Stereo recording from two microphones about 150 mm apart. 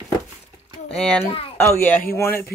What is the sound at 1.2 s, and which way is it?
Speech, 40° left (ahead or behind).